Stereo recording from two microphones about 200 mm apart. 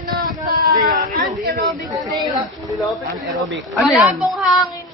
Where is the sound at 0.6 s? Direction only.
45° right (ahead or behind).